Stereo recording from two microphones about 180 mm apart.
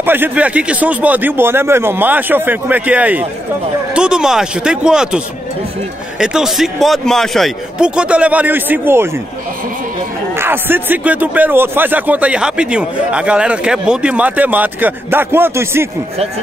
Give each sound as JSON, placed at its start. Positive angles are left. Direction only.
{"t": 0.0, "sound": "a man's voice", "side_deg": -10}
{"t": 10.3, "sound": "a man's voice", "side_deg": -10}